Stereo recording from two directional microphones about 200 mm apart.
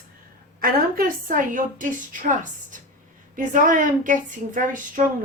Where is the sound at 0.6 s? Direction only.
45° right (ahead or behind).